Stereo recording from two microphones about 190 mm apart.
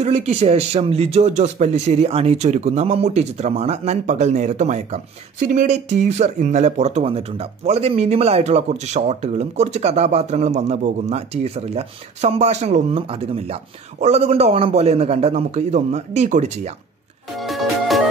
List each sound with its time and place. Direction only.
0.0 s speech: 35° right (ahead or behind)
17.4 s music: centre (ahead or behind)